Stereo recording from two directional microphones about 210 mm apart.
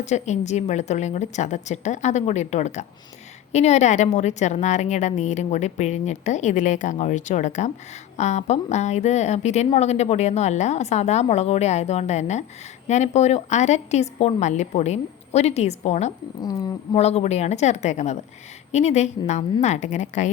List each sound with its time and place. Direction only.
0.0 s a woman's voice: 35° left (ahead or behind)
16.4 s speech: 15° left (ahead or behind)
16.9 s a woman's voice: 30° left (ahead or behind)